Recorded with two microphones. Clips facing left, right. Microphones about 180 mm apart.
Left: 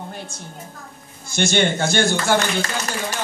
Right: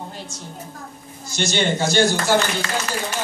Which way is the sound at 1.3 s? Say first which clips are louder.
Left 2 dB; 55° left (ahead or behind).